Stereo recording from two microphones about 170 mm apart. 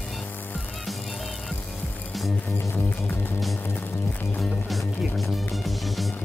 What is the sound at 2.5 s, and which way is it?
Music, 10° left (ahead or behind).